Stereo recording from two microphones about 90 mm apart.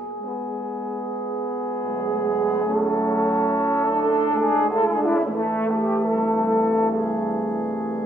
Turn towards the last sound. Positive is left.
turn(degrees=25)  # may be behind; listen again after turning